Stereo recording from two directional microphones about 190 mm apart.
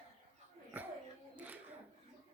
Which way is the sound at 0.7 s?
10° right (ahead or behind).